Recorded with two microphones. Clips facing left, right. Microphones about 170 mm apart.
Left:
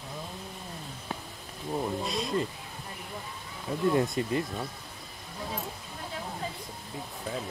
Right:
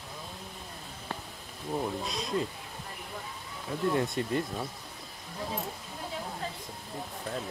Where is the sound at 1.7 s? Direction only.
Centre (ahead or behind).